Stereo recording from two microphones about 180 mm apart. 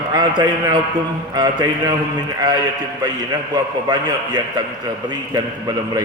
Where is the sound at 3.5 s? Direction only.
20° right (ahead or behind).